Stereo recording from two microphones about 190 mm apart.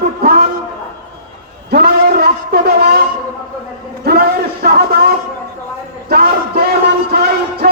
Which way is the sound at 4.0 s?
55° right (ahead or behind).